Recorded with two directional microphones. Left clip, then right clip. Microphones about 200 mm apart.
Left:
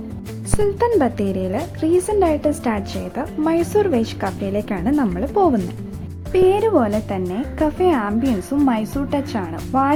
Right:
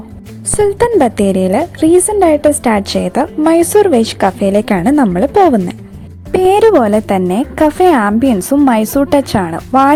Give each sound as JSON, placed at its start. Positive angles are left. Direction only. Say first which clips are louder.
{"t": 0.6, "sound": "a woman's voice", "louder": "right 7 dB", "side_deg": -35}